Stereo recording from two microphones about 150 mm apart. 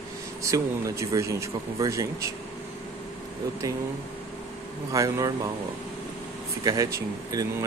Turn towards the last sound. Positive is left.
turn(degrees=-25)  # may be behind; listen again after turning